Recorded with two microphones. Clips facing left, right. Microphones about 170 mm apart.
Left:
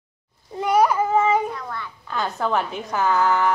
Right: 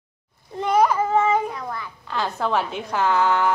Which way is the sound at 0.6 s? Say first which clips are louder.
Even; 5° left (ahead or behind).